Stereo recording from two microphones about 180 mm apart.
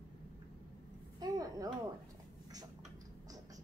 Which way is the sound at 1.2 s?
20° right (ahead or behind).